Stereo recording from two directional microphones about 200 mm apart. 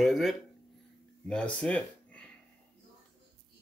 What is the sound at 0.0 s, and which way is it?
Speech, centre (ahead or behind).